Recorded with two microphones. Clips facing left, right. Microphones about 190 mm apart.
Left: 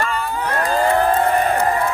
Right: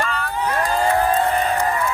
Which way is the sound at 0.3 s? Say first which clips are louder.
Even; 55° left (ahead or behind).